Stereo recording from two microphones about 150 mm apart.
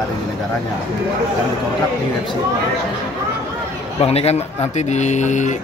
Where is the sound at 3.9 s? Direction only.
45° left (ahead or behind).